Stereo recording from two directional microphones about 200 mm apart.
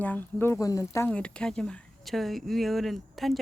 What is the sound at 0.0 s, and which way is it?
Speech, 10° left (ahead or behind).